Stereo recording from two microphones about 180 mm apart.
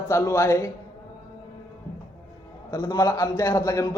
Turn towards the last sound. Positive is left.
turn(degrees=15)  # may be behind; listen again after turning